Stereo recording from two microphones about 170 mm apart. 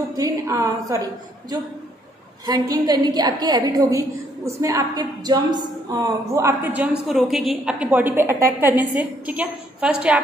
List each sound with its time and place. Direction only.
0.2 s a woman's voice: 20° right (ahead or behind)
2.4 s a woman's voice: 25° right (ahead or behind); by 10.2 s 5° right (ahead or behind)